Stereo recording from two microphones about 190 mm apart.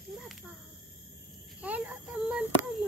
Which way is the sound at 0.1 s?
Centre (ahead or behind).